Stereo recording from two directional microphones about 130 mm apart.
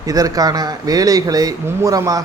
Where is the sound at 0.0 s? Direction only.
25° right (ahead or behind).